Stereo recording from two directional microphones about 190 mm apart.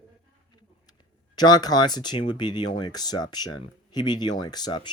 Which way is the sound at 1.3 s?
20° left (ahead or behind).